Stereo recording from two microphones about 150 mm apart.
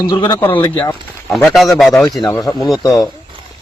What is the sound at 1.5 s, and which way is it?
Speech, centre (ahead or behind).